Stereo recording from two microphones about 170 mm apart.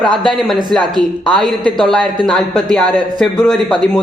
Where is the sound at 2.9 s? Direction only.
25° right (ahead or behind).